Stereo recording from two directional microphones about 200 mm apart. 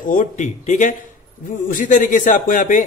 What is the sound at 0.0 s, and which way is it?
Speech, 40° left (ahead or behind).